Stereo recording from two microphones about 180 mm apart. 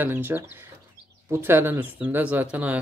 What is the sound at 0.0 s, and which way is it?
Speech, 10° right (ahead or behind).